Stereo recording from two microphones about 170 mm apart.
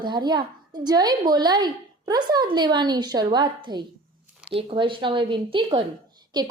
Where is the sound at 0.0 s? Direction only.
25° right (ahead or behind).